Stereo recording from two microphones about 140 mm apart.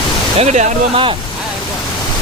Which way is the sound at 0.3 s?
50° right (ahead or behind).